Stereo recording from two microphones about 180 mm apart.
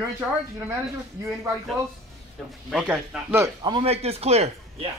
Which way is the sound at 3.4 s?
25° right (ahead or behind).